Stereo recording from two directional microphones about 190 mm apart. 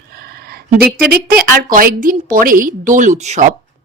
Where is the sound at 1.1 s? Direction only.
50° right (ahead or behind).